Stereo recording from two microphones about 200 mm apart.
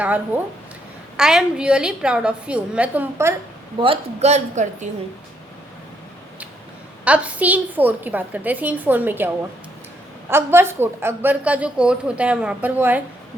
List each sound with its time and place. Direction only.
0.3 s a woman's voice: 10° right (ahead or behind)
3.8 s speech: 30° right (ahead or behind)
7.0 s a woman's voice: 5° right (ahead or behind)